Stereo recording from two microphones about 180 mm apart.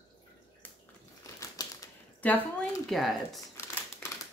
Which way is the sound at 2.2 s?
10° left (ahead or behind).